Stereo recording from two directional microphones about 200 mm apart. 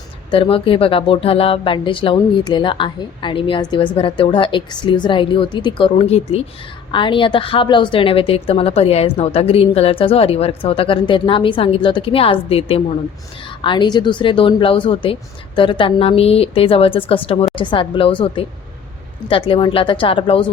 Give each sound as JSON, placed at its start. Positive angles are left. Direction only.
{"t": 0.3, "sound": "speech", "side_deg": 25}